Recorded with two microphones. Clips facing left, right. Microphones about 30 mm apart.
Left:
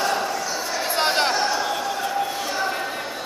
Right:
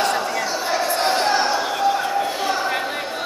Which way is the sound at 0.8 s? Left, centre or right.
Centre.